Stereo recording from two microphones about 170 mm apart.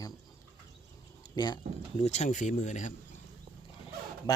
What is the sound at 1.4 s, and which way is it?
Speech, 25° left (ahead or behind).